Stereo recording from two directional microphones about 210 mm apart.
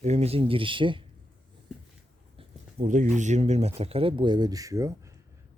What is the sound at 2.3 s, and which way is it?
A man's voice, 35° right (ahead or behind).